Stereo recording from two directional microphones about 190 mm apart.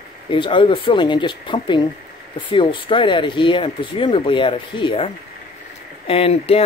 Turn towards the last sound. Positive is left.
turn(degrees=30)  # may be behind; listen again after turning